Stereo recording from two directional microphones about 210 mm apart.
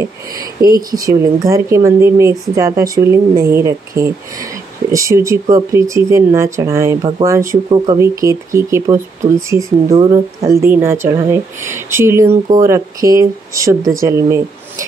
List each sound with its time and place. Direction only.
0.6 s speech: 15° right (ahead or behind)